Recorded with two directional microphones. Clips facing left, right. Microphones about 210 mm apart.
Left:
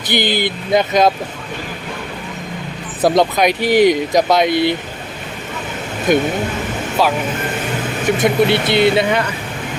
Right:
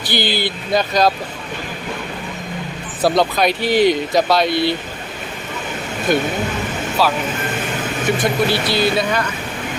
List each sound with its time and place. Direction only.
0.1 s speech: 20° left (ahead or behind)
3.0 s speech: 20° left (ahead or behind)
6.1 s speech: 15° left (ahead or behind)
8.2 s speech: 25° left (ahead or behind)